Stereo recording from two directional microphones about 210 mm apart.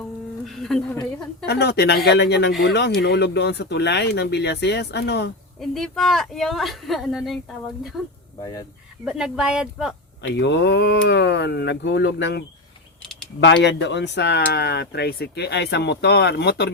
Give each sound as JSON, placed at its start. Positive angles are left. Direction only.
{"t": 0.4, "sound": "a woman's voice", "side_deg": 0}
{"t": 1.5, "sound": "speech", "side_deg": 50}
{"t": 5.5, "sound": "a woman's voice", "side_deg": 0}
{"t": 8.4, "sound": "speech", "side_deg": 20}
{"t": 9.0, "sound": "a woman's voice", "side_deg": -5}
{"t": 10.2, "sound": "speech", "side_deg": 55}